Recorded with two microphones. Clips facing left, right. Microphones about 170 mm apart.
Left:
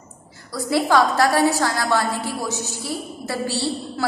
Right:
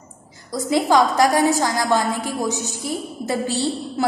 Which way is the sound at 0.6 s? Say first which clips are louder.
Right 1 dB; 20° right (ahead or behind).